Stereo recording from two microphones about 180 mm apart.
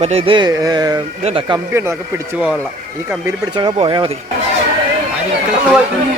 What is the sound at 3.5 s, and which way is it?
Speech, 25° right (ahead or behind).